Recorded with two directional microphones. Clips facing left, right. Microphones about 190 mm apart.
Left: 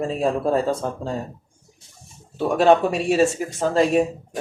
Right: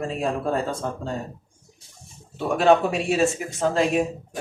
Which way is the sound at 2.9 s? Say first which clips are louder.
Left 4 dB; 40° left (ahead or behind).